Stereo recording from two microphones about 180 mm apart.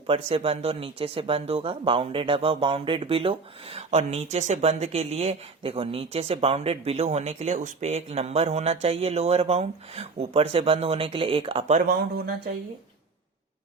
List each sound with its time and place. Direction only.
0.1 s speech: 30° right (ahead or behind)
11.9 s speech: 60° right (ahead or behind)